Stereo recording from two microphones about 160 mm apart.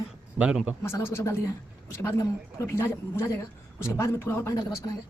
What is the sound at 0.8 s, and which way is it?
Speech, 15° left (ahead or behind).